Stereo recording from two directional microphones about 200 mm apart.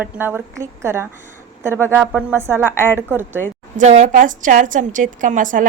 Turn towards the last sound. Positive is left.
turn(degrees=-40)  # may be behind; listen again after turning